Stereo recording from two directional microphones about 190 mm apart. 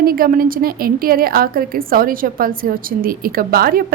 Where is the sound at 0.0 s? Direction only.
50° right (ahead or behind).